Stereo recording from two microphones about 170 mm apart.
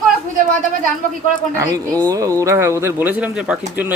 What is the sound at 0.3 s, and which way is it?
Speech, 55° right (ahead or behind).